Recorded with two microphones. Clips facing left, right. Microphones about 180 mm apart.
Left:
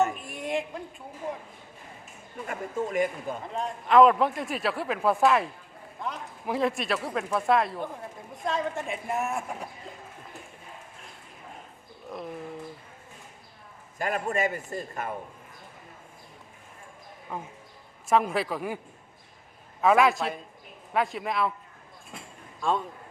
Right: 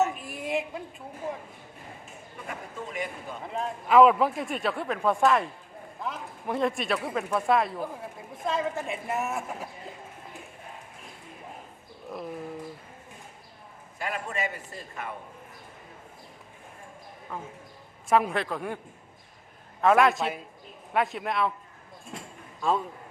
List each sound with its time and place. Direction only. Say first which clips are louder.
0.0 s a sound: even; centre (ahead or behind)
2.5 s a man's voice: left 8 dB; 45° left (ahead or behind)
3.4 s speech: even; centre (ahead or behind)
12.1 s speech: even; 5° right (ahead or behind)
14.0 s a man's voice: left 5 dB; 45° left (ahead or behind)
17.3 s a man's voice: left 1 dB; 15° left (ahead or behind)
18.1 s speech: even; centre (ahead or behind)
19.8 s speech: even; centre (ahead or behind)
22.6 s speech: right 1 dB; 5° right (ahead or behind)